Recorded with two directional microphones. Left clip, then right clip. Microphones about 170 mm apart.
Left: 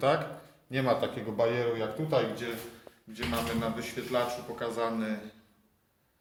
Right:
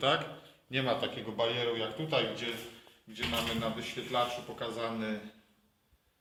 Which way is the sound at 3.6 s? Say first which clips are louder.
Left 2 dB; 20° right (ahead or behind).